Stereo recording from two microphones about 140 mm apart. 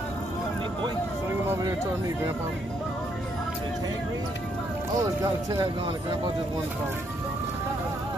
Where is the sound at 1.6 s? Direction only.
25° right (ahead or behind).